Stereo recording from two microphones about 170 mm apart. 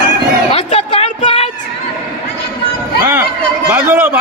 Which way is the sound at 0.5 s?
35° left (ahead or behind).